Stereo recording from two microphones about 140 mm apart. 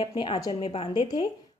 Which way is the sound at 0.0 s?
40° left (ahead or behind).